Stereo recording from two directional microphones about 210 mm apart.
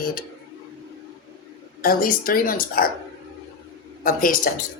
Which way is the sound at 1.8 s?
45° left (ahead or behind).